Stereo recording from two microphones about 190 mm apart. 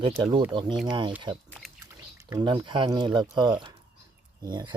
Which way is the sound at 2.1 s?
15° right (ahead or behind).